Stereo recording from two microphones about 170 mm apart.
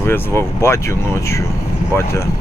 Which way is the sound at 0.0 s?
15° left (ahead or behind).